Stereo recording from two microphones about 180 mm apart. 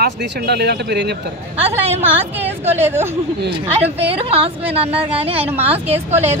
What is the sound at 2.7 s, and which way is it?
Speech, 10° right (ahead or behind).